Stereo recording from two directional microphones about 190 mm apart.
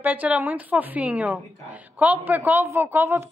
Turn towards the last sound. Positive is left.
turn(degrees=-10)  # may be behind; listen again after turning